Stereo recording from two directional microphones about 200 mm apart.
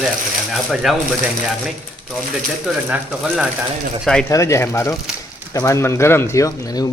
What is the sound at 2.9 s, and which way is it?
Speech, 5° right (ahead or behind).